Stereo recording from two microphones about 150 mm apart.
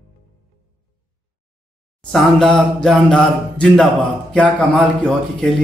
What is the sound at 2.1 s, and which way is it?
A man's voice, 5° left (ahead or behind).